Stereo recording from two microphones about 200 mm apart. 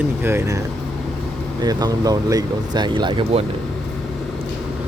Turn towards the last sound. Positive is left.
turn(degrees=-25)  # may be behind; listen again after turning